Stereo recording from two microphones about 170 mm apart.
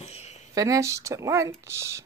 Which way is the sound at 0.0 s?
40° left (ahead or behind).